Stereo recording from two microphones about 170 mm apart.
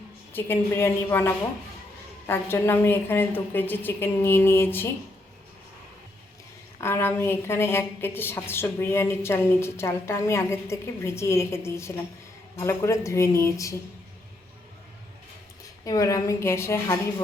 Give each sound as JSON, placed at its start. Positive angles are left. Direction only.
{"t": 0.3, "sound": "a woman's voice", "side_deg": 10}
{"t": 6.7, "sound": "a woman's voice", "side_deg": 15}
{"t": 15.8, "sound": "a woman's voice", "side_deg": 20}